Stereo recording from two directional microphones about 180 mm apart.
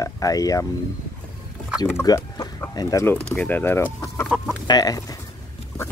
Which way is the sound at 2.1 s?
20° left (ahead or behind).